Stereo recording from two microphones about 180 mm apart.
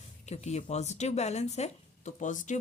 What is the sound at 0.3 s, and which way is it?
Speech, 40° left (ahead or behind).